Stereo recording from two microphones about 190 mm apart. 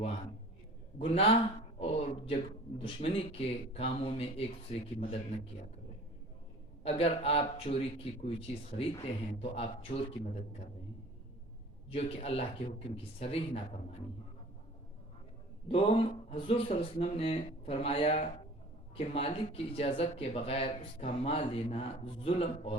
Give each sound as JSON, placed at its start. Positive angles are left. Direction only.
{"t": 0.9, "sound": "speech", "side_deg": 30}
{"t": 6.8, "sound": "speech", "side_deg": 30}
{"t": 11.9, "sound": "speech", "side_deg": 30}
{"t": 15.7, "sound": "a man's voice", "side_deg": 30}